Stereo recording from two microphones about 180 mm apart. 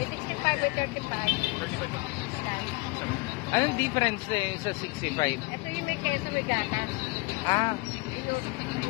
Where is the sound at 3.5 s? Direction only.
20° left (ahead or behind).